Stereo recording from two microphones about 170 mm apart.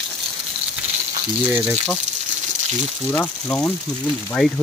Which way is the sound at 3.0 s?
10° left (ahead or behind).